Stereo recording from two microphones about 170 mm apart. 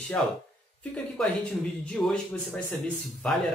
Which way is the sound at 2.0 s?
10° left (ahead or behind).